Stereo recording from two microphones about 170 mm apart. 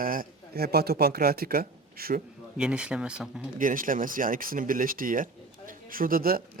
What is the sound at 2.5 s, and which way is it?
Speech, 5° right (ahead or behind).